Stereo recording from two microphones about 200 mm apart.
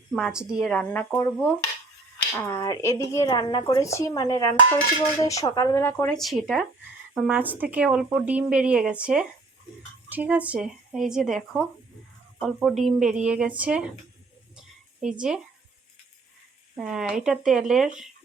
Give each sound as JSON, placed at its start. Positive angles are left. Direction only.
{"t": 0.1, "sound": "speech", "side_deg": -5}
{"t": 6.1, "sound": "speech", "side_deg": 0}
{"t": 15.0, "sound": "speech", "side_deg": -5}
{"t": 16.7, "sound": "speech", "side_deg": -5}